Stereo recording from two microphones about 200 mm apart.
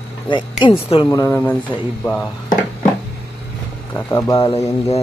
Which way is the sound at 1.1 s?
15° left (ahead or behind).